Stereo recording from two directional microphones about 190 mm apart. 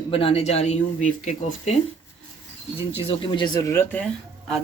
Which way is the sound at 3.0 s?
30° left (ahead or behind).